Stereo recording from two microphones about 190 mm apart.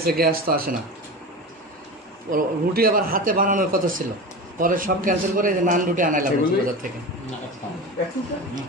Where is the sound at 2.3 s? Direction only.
50° right (ahead or behind).